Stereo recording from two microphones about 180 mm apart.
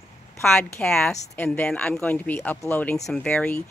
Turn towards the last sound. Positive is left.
turn(degrees=5)  # may be behind; listen again after turning